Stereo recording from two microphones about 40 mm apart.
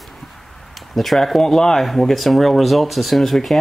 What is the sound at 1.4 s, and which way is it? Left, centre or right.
Speech, centre.